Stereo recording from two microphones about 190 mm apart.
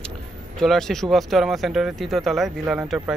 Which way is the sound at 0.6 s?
Centre (ahead or behind).